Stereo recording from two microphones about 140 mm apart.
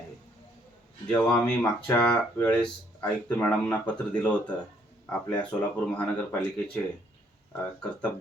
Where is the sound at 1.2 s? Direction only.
5° left (ahead or behind).